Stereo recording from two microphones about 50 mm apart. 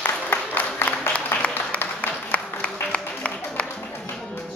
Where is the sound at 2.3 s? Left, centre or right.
Left.